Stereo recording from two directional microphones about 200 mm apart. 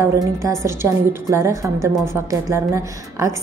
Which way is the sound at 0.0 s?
15° right (ahead or behind).